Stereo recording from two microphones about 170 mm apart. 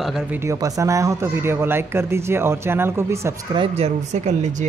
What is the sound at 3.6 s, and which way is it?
Speech, 40° right (ahead or behind).